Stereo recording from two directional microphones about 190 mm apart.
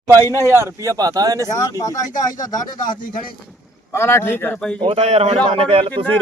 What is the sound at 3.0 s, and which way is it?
Speech, 45° left (ahead or behind).